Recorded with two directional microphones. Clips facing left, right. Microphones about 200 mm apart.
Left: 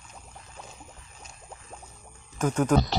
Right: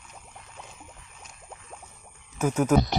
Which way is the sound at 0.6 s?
35° left (ahead or behind).